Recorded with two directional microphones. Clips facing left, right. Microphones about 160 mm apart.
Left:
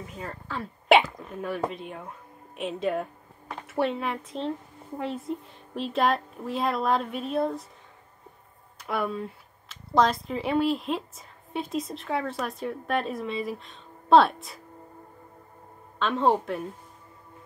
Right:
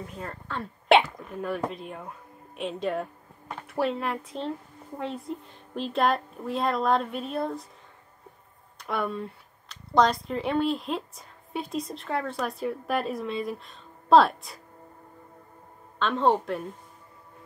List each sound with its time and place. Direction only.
0.0 s speech: centre (ahead or behind)
8.7 s speech: centre (ahead or behind)
16.0 s a woman's voice: centre (ahead or behind)